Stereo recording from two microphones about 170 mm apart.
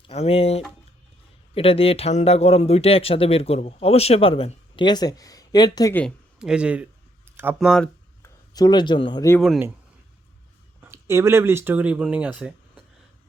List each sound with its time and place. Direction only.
0.1 s speech: 35° left (ahead or behind)
5.9 s speech: 10° left (ahead or behind)
6.4 s speech: 5° right (ahead or behind)
7.3 s a sound: 10° right (ahead or behind)
7.6 s speech: centre (ahead or behind)
8.2 s speech: 20° left (ahead or behind)
10.8 s speech: 15° right (ahead or behind)